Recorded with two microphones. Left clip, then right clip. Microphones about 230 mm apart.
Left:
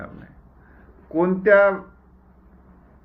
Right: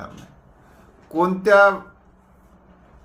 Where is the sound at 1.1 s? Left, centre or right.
Right.